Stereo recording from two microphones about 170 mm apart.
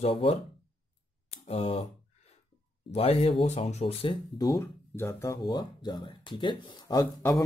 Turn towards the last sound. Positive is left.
turn(degrees=20)  # may be behind; listen again after turning